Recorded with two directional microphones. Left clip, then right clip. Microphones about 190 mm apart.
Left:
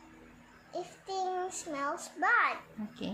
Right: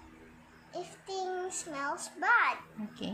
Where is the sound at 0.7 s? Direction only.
30° left (ahead or behind).